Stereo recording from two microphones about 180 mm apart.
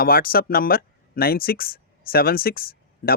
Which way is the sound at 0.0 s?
55° left (ahead or behind).